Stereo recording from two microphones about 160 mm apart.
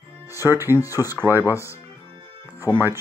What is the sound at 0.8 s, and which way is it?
Speech, 20° left (ahead or behind).